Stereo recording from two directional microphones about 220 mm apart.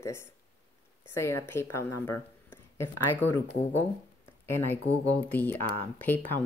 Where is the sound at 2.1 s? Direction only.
10° left (ahead or behind).